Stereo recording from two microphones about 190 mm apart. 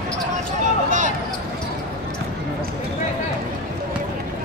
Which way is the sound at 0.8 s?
40° right (ahead or behind).